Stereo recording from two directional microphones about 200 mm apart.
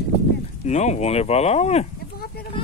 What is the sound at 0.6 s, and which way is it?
Speech, 35° left (ahead or behind).